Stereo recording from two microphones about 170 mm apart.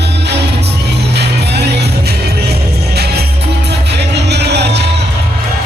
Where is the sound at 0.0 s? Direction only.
85° right.